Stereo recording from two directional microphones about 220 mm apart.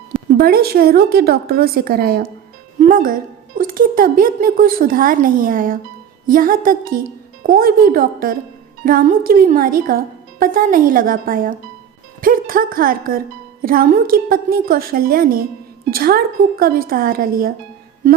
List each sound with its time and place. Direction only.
0.3 s a woman's voice: 45° right (ahead or behind)